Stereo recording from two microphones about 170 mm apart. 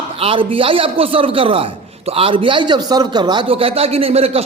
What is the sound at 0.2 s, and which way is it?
A man's voice, 30° right (ahead or behind).